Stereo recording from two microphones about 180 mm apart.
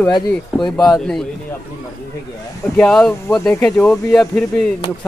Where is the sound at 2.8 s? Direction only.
5° left (ahead or behind).